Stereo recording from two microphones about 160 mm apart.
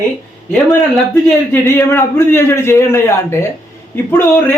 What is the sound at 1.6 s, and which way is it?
A man's voice, 15° left (ahead or behind).